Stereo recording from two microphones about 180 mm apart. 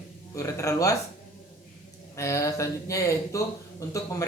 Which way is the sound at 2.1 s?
15° left (ahead or behind).